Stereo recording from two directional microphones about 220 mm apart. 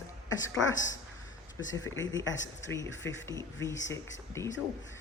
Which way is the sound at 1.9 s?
15° left (ahead or behind).